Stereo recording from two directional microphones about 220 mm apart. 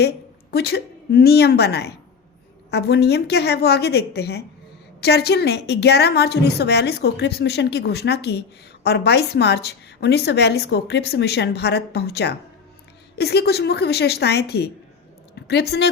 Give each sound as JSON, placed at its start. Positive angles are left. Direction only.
{"t": 0.5, "sound": "a woman's voice", "side_deg": 45}